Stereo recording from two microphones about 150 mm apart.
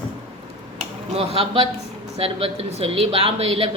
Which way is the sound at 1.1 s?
40° right (ahead or behind).